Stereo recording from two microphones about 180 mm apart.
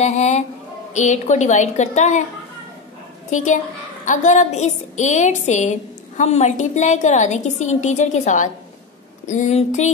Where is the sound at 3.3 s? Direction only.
45° left (ahead or behind).